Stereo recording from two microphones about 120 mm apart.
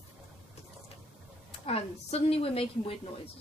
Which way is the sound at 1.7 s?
55° left (ahead or behind).